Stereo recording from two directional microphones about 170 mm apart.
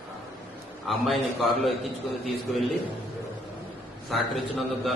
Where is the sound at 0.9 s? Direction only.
Centre (ahead or behind).